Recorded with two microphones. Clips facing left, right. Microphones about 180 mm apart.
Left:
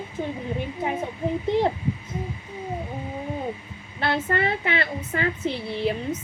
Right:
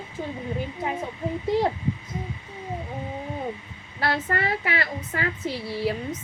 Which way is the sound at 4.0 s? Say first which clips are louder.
Left 2 dB; 25° left (ahead or behind).